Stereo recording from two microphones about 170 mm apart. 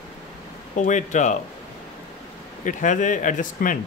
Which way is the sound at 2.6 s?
50° left (ahead or behind).